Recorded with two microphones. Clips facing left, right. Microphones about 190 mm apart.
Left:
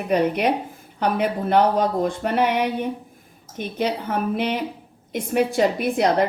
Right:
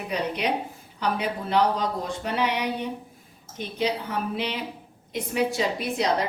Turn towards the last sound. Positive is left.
turn(degrees=55)  # may be behind; listen again after turning